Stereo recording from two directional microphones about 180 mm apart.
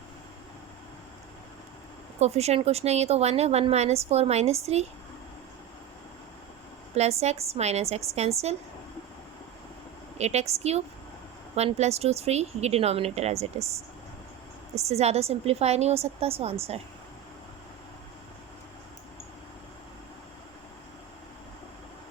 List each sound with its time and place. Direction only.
2.1 s a woman's voice: 35° right (ahead or behind)
6.9 s a woman's voice: 35° right (ahead or behind)
10.2 s a woman's voice: 40° right (ahead or behind)
14.8 s a woman's voice: 35° right (ahead or behind)